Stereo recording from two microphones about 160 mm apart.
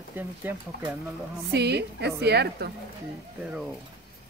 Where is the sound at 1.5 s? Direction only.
90° right.